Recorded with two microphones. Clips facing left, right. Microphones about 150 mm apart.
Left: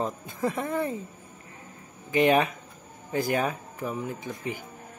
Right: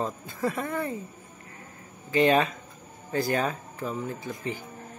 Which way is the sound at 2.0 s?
15° left (ahead or behind).